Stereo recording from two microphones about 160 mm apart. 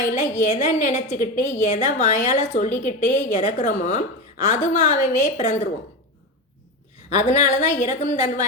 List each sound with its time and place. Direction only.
0.0 s a woman's voice: 50° left (ahead or behind)
7.1 s a woman's voice: 50° left (ahead or behind)